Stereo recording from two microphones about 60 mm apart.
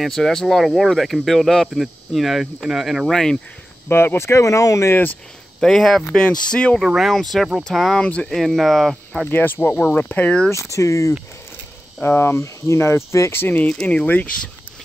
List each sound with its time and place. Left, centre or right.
0.0 s speech: centre
3.1 s speech: centre
3.9 s speech: left
5.6 s speech: centre
7.3 s speech: centre
8.0 s speech: left
8.3 s speech: centre
9.3 s speech: left
10.5 s speech: left
12.0 s speech: left
13.8 s speech: left